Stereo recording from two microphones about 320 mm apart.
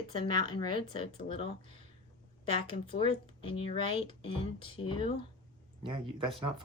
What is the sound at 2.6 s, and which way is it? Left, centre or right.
Speech, centre.